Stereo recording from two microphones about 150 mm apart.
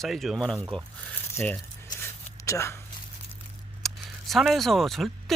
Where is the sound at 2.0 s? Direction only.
20° left (ahead or behind).